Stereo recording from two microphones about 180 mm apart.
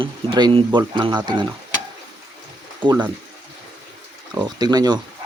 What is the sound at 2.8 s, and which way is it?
Speech, 25° right (ahead or behind).